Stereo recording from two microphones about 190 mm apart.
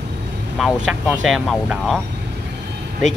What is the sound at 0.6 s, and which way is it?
Speech, 5° right (ahead or behind).